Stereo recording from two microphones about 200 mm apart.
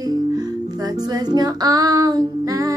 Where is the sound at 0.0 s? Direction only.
20° right (ahead or behind).